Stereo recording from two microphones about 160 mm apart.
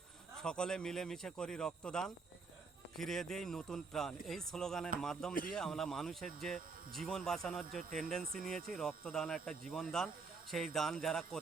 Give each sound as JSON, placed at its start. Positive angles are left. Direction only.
{"t": 0.3, "sound": "speech", "side_deg": 5}
{"t": 5.3, "sound": "a man's voice", "side_deg": 60}
{"t": 5.5, "sound": "speech", "side_deg": 0}
{"t": 8.2, "sound": "speech", "side_deg": -60}
{"t": 8.4, "sound": "speech", "side_deg": 5}